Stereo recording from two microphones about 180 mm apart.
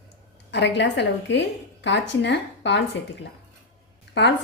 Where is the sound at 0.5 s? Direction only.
75° left (ahead or behind).